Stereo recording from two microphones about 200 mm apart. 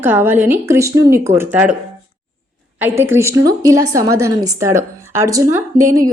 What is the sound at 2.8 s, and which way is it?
A woman's voice, 10° right (ahead or behind).